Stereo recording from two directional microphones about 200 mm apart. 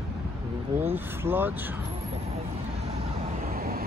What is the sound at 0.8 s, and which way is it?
Speech, 10° right (ahead or behind).